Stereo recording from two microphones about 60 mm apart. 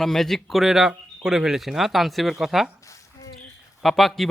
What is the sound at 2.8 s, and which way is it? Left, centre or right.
Squish, left.